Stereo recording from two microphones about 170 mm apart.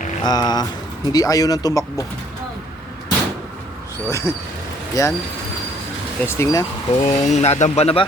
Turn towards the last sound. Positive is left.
turn(degrees=35)  # may be behind; listen again after turning